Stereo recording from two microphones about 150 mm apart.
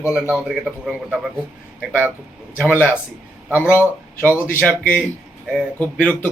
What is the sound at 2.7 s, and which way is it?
Speech, 15° left (ahead or behind).